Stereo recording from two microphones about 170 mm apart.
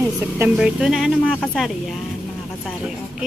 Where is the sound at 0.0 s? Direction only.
10° right (ahead or behind).